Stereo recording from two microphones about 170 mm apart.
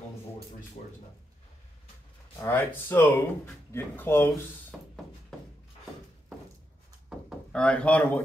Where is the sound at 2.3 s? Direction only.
15° left (ahead or behind).